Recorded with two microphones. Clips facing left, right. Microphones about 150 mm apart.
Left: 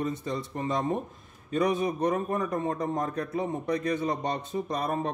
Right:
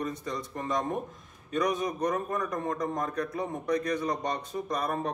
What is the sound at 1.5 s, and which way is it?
A man's voice, 30° left (ahead or behind).